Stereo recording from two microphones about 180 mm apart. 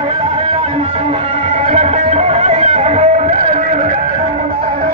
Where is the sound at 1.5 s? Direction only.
35° right (ahead or behind).